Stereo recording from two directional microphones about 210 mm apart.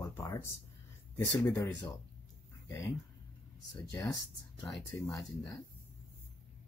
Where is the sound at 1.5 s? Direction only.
15° left (ahead or behind).